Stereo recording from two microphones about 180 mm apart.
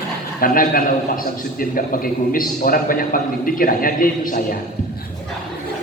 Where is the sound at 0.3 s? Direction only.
50° left (ahead or behind).